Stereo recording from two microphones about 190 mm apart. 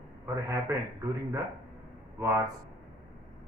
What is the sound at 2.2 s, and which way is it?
Speech, 15° right (ahead or behind).